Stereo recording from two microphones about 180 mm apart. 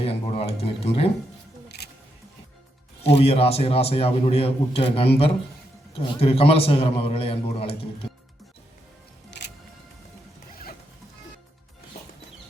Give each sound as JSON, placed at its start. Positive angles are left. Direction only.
{"t": 0.0, "sound": "a man's voice", "side_deg": 35}
{"t": 1.6, "sound": "music", "side_deg": 65}
{"t": 3.2, "sound": "a man's voice", "side_deg": 30}
{"t": 9.3, "sound": "music", "side_deg": 75}